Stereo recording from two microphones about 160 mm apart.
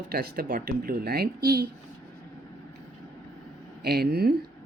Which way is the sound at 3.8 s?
80° right.